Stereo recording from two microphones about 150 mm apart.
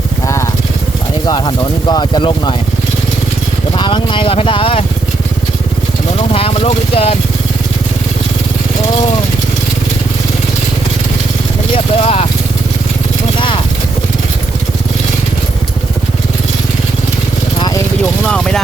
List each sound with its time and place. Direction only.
1.3 s speech: 30° left (ahead or behind)
3.8 s speech: 30° left (ahead or behind)
6.1 s speech: 40° left (ahead or behind)
11.7 s speech: 40° left (ahead or behind)
18.3 s speech: 5° left (ahead or behind)